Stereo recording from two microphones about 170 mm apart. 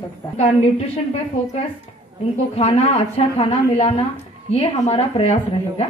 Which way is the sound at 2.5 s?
35° left (ahead or behind).